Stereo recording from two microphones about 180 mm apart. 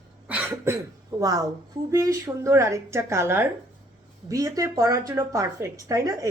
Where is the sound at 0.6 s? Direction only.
20° right (ahead or behind).